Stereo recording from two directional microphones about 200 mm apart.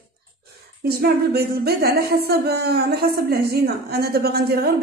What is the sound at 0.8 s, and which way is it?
A woman's voice, 50° right (ahead or behind).